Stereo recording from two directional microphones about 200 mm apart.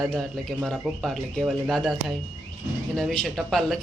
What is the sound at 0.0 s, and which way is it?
Speech, centre (ahead or behind).